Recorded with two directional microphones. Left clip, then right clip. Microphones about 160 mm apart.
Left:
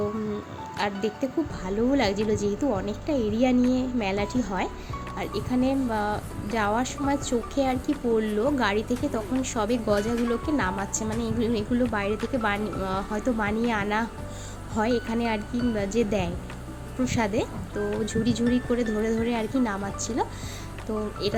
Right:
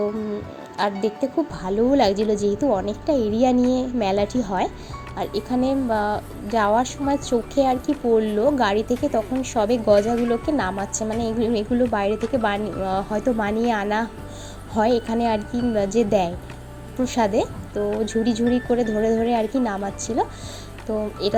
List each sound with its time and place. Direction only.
0.8 s speech: 15° right (ahead or behind)